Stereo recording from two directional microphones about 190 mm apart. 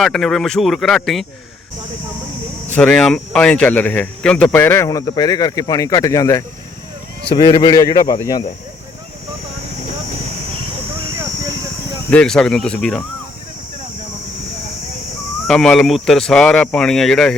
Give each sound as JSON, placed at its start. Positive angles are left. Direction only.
{"t": 0.0, "sound": "speech", "side_deg": 0}
{"t": 2.7, "sound": "speech", "side_deg": 5}
{"t": 12.1, "sound": "speech", "side_deg": 5}
{"t": 15.4, "sound": "speech", "side_deg": 5}